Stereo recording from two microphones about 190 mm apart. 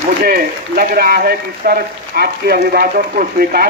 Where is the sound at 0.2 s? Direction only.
50° right (ahead or behind).